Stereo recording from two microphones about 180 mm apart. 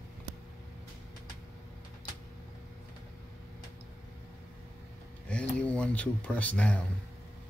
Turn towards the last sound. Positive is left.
turn(degrees=5)  # may be behind; listen again after turning